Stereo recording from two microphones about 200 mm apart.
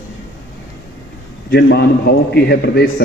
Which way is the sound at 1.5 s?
55° left (ahead or behind).